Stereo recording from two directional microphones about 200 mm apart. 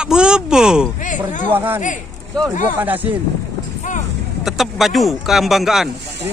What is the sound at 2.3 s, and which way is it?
Speech, 5° left (ahead or behind).